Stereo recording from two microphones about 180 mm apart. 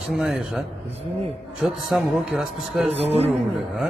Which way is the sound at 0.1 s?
Centre (ahead or behind).